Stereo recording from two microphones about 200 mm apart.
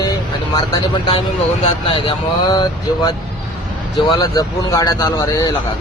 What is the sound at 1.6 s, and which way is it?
Speech, 25° left (ahead or behind).